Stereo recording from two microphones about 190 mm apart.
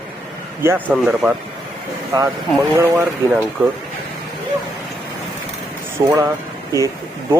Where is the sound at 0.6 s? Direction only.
10° right (ahead or behind).